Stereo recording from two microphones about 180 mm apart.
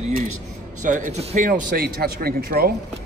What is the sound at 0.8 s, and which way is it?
A man's voice, 45° right (ahead or behind).